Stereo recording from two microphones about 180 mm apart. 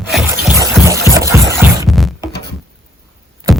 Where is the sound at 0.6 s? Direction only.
15° right (ahead or behind).